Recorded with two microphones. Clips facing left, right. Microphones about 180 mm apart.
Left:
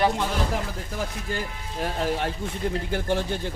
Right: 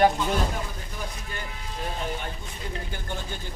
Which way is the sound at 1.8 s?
90° left.